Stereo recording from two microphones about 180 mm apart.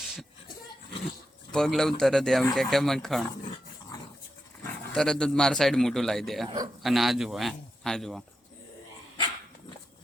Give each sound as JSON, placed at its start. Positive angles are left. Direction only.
{"t": 1.5, "sound": "speech", "side_deg": 5}
{"t": 3.5, "sound": "dog", "side_deg": 20}
{"t": 4.6, "sound": "speech", "side_deg": 5}